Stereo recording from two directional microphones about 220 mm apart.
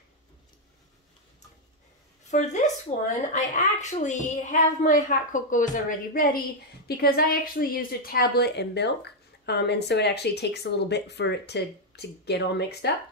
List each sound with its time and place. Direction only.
2.3 s a woman's voice: 30° left (ahead or behind); by 12.9 s 50° left (ahead or behind)